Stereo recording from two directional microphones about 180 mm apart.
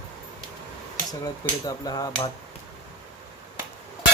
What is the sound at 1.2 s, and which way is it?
Speech, 20° left (ahead or behind).